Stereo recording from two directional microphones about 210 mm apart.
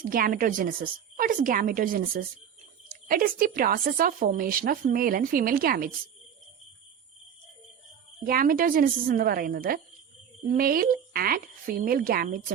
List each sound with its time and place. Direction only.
0.0 s a woman's voice: 45° right (ahead or behind)
3.1 s speech: 45° right (ahead or behind)
8.2 s speech: 40° right (ahead or behind)